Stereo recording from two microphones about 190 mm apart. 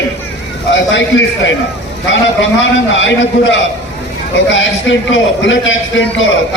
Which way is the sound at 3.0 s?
80° left.